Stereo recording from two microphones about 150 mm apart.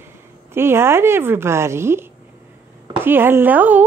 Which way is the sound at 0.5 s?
15° right (ahead or behind).